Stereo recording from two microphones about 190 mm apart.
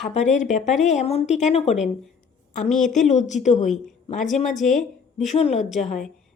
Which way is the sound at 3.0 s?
40° left (ahead or behind).